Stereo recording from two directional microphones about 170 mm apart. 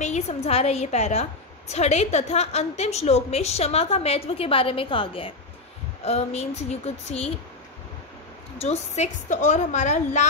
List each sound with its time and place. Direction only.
0.0 s a woman's voice: 40° left (ahead or behind)
8.5 s a woman's voice: 40° left (ahead or behind)